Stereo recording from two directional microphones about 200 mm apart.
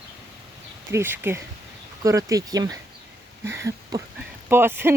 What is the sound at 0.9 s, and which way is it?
Speech, 10° right (ahead or behind).